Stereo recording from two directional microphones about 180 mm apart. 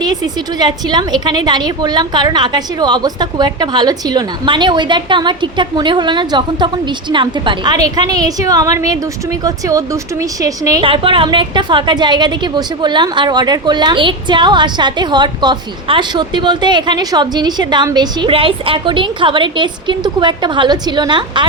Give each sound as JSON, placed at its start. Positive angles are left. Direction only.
{"t": 0.3, "sound": "a woman's voice", "side_deg": -25}